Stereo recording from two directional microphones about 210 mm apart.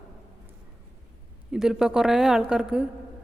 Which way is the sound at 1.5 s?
Centre (ahead or behind).